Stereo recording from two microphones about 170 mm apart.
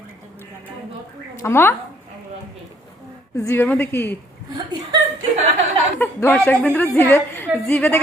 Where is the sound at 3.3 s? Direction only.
15° left (ahead or behind).